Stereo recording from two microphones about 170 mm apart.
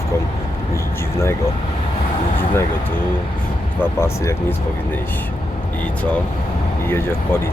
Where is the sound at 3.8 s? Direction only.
15° left (ahead or behind).